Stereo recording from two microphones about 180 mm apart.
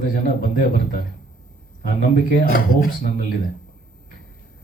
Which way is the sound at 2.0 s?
50° left (ahead or behind).